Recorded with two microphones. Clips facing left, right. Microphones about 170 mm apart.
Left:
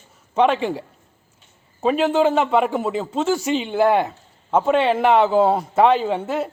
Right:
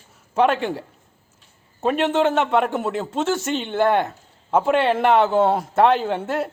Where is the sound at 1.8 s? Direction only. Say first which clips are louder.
Left 2 dB; centre (ahead or behind).